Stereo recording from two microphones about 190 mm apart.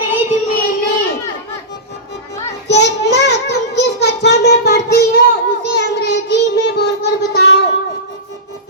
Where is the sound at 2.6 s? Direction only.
65° left (ahead or behind).